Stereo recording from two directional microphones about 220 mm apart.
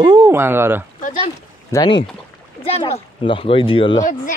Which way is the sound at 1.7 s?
20° left (ahead or behind).